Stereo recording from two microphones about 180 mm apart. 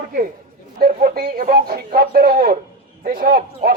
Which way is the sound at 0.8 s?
55° right (ahead or behind).